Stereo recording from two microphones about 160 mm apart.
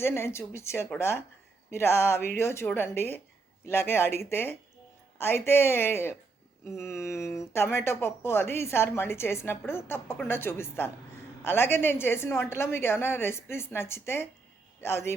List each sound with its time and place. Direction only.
0.0 s speech: 15° left (ahead or behind)